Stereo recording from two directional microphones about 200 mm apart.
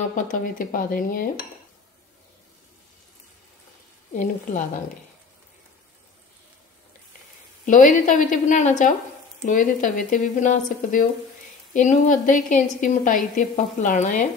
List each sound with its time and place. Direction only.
0.1 s speech: 45° left (ahead or behind)
4.1 s speech: 40° left (ahead or behind)
7.6 s speech: 40° left (ahead or behind)